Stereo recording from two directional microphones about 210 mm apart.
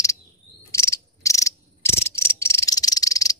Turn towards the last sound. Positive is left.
turn(degrees=15)  # may be behind; listen again after turning